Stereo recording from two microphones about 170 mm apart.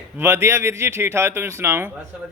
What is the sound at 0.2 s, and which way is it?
A man's voice, 15° right (ahead or behind).